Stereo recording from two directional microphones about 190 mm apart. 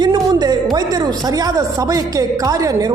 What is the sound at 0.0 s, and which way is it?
A woman's voice, 20° right (ahead or behind).